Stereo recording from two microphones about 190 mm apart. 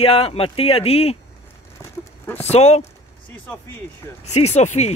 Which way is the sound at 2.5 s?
35° left (ahead or behind).